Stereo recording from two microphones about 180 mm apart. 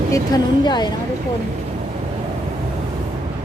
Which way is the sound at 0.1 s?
20° left (ahead or behind).